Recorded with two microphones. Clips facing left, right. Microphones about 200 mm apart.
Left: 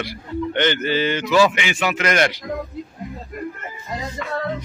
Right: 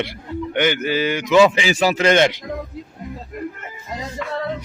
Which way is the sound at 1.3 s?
25° right (ahead or behind).